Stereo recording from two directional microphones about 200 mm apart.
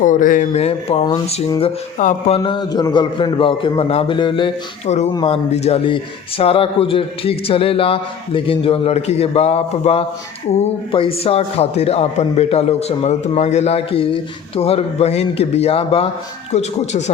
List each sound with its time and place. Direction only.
0.0 s a man's voice: 40° left (ahead or behind)
2.4 s a man's voice: 20° left (ahead or behind)